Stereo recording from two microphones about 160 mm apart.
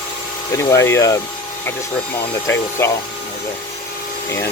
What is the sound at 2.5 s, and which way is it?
Speech, 15° left (ahead or behind).